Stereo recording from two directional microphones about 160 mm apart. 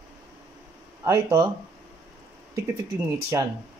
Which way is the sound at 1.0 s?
15° right (ahead or behind).